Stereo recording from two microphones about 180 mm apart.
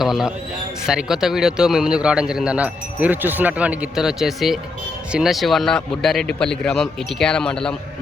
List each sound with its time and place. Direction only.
0.0 s a man's voice: centre (ahead or behind)